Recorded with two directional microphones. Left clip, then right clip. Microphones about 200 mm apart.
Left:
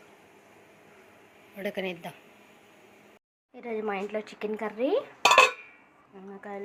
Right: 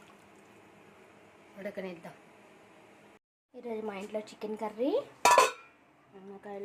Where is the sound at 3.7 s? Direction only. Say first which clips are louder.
Left 6 dB; 10° left (ahead or behind).